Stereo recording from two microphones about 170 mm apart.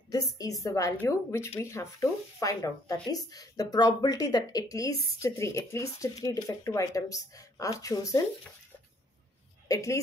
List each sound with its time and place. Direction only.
0.1 s speech: 20° left (ahead or behind)
9.7 s speech: 20° left (ahead or behind)